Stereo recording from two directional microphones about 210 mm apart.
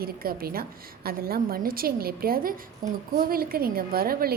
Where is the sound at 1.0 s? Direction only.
45° right (ahead or behind).